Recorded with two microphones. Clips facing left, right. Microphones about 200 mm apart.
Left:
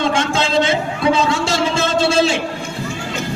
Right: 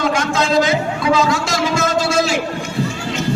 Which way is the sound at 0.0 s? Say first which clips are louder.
Even; 30° left (ahead or behind).